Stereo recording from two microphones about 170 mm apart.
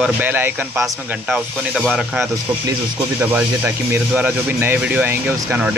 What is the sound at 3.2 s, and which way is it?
Speech, 10° right (ahead or behind).